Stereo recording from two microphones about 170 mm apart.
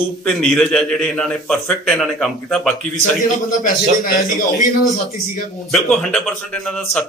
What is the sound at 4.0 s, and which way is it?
Speech, 55° left (ahead or behind).